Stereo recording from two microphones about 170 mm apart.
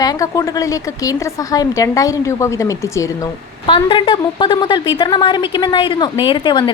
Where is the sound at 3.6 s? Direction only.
30° left (ahead or behind).